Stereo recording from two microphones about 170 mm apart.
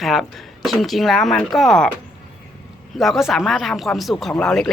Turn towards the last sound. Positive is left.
turn(degrees=5)  # may be behind; listen again after turning